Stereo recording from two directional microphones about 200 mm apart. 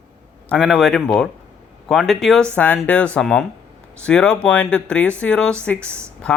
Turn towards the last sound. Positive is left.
turn(degrees=5)  # may be behind; listen again after turning